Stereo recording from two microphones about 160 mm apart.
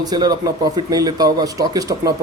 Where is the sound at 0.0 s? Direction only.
25° right (ahead or behind).